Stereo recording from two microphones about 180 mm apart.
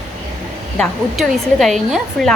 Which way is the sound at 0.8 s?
Centre (ahead or behind).